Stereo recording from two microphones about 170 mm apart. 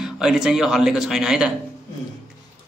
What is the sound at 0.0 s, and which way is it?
A man's voice, 5° right (ahead or behind).